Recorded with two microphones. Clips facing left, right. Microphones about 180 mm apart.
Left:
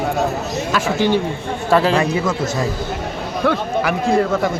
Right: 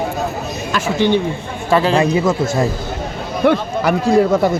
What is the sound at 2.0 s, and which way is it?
Speech, 25° right (ahead or behind).